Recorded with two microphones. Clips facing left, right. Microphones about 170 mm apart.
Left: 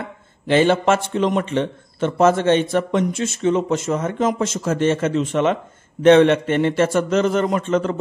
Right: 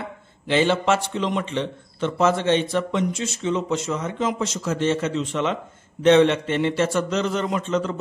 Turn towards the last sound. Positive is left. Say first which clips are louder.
# left 4 dB
turn(degrees=55)  # may be behind; listen again after turning